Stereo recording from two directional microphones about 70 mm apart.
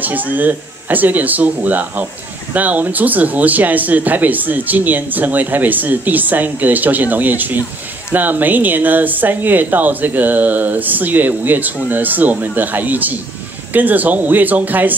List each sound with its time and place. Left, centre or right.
0.0 s speech: right